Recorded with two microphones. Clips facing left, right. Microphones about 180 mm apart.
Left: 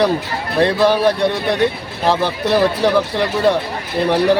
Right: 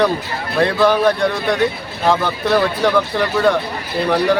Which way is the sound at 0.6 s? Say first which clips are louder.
Left 1 dB; 35° left (ahead or behind).